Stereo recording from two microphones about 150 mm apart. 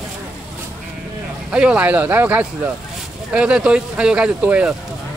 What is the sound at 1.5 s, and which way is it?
Speech, 5° right (ahead or behind).